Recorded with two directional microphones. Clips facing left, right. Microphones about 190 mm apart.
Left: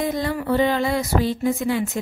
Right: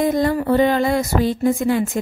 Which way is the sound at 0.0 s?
50° right (ahead or behind).